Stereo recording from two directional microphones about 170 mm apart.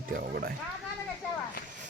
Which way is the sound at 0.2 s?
65° right (ahead or behind).